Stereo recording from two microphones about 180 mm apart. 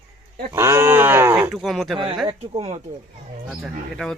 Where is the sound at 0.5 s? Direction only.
15° right (ahead or behind); by 2.0 s centre (ahead or behind).